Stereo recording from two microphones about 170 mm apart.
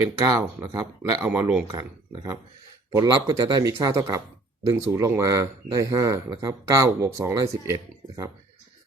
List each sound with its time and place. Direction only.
0.0 s speech: 20° right (ahead or behind)
2.9 s speech: 20° right (ahead or behind)